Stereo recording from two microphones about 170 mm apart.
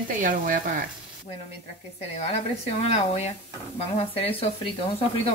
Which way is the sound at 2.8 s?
40° left (ahead or behind).